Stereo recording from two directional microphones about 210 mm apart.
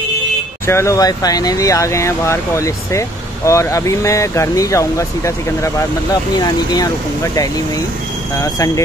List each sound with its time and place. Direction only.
0.7 s speech: 15° left (ahead or behind)
8.4 s speech: 15° left (ahead or behind)